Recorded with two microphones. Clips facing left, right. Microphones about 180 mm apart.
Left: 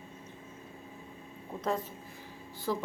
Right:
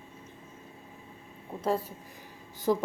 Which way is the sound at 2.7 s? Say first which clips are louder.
Right 6 dB; 20° right (ahead or behind).